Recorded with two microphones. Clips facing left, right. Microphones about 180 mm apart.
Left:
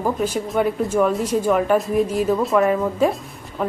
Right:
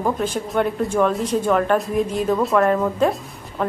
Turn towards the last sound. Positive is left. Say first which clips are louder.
# even
turn(degrees=5)  # may be behind; listen again after turning